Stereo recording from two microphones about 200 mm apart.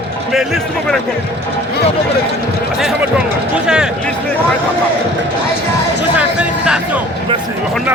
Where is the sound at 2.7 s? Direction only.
5° right (ahead or behind).